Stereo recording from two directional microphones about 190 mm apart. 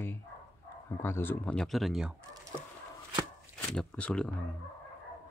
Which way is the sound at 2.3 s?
15° right (ahead or behind).